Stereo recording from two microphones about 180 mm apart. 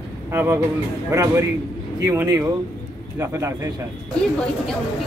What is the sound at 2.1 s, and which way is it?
Speech, 15° right (ahead or behind).